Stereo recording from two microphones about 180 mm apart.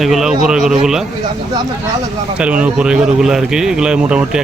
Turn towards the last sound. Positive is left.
turn(degrees=-5)  # may be behind; listen again after turning